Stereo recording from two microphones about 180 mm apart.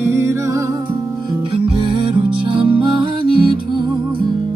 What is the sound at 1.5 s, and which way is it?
Music, 30° right (ahead or behind).